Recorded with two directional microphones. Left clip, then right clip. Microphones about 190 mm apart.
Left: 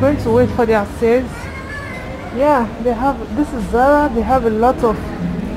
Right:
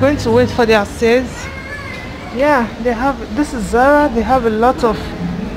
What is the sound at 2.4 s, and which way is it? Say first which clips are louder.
Speech: right 1 dB; 10° right (ahead or behind).